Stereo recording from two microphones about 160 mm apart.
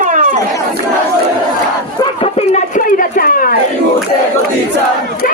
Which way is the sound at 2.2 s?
50° left (ahead or behind).